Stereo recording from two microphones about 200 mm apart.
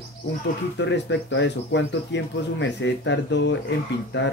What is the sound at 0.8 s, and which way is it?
Speech, 65° left (ahead or behind).